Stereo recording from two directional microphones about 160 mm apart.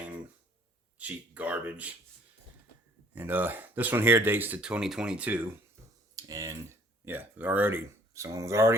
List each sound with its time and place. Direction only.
0.9 s speech: 10° right (ahead or behind)
3.2 s speech: 10° right (ahead or behind)
6.1 s speech: 20° right (ahead or behind)